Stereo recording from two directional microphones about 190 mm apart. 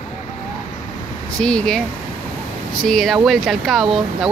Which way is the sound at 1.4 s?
5° left (ahead or behind).